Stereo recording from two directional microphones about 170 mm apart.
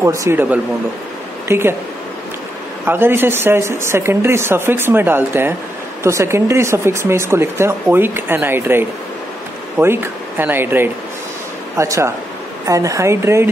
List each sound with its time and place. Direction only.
0.0 s speech: 15° right (ahead or behind)
2.8 s speech: 15° right (ahead or behind)